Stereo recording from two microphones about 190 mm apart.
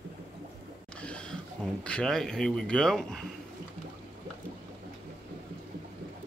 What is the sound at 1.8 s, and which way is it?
Speech, 5° left (ahead or behind).